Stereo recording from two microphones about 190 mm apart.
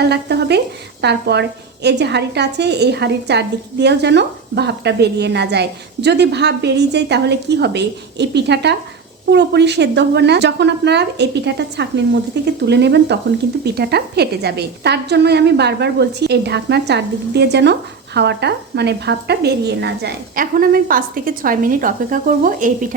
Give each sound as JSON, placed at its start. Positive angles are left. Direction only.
{"t": 0.0, "sound": "a woman's voice", "side_deg": -60}